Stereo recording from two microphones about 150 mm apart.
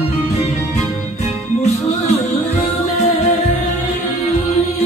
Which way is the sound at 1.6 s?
45° left (ahead or behind).